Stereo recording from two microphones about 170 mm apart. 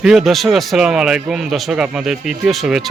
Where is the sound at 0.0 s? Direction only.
Centre (ahead or behind).